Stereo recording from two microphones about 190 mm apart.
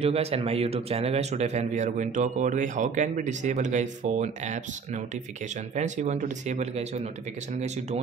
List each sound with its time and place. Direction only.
0.0 s speech: 30° right (ahead or behind)